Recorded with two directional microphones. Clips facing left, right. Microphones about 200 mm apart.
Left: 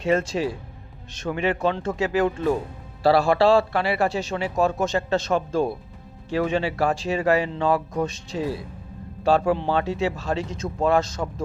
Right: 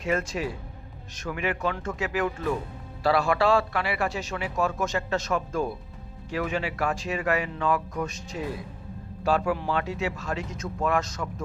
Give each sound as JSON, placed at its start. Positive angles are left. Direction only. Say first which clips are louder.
{"t": 0.0, "sound": "a man's voice", "louder": "left 5 dB", "side_deg": 30}